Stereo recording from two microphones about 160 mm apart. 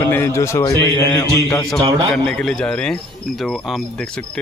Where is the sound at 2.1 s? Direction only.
5° left (ahead or behind).